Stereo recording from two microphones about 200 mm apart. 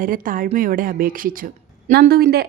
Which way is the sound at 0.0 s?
45° right (ahead or behind).